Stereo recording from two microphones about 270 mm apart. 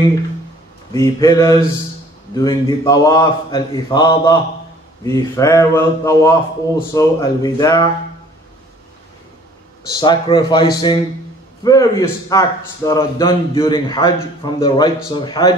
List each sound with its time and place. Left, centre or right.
0.9 s a man's voice: centre
9.8 s a man's voice: centre